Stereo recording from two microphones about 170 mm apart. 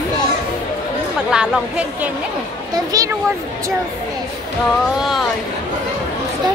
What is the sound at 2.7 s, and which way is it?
Speech, 20° right (ahead or behind).